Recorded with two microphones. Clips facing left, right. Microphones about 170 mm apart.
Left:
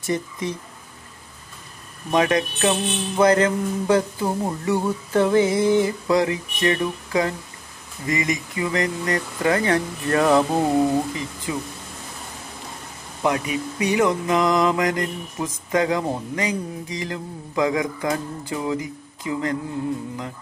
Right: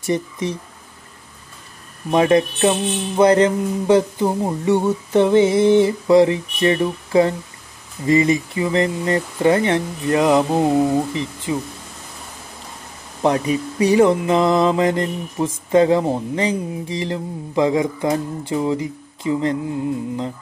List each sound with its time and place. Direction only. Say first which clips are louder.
0.0 s speech: right 4 dB; 20° right (ahead or behind)
2.0 s mantra: right 5 dB; 25° right (ahead or behind)
13.2 s mantra: right 5 dB; 30° right (ahead or behind)